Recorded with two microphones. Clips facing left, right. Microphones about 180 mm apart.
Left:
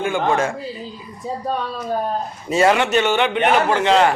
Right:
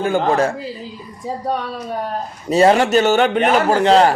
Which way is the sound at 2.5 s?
35° right (ahead or behind).